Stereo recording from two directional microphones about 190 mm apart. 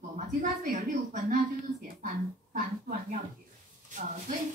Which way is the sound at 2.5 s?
45° right (ahead or behind).